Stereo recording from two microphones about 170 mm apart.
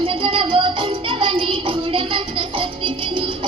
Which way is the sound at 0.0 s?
30° right (ahead or behind).